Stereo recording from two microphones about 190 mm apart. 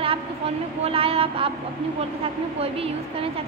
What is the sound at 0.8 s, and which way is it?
Speech, 30° right (ahead or behind).